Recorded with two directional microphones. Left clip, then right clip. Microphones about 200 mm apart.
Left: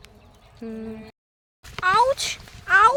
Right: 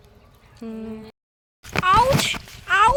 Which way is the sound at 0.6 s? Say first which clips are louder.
Right 1 dB; 5° right (ahead or behind).